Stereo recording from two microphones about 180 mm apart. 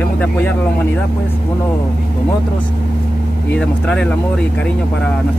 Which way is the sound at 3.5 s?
5° left (ahead or behind).